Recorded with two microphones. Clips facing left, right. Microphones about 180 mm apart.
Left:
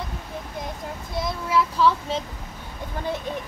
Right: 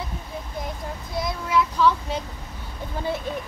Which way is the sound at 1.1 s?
Centre (ahead or behind).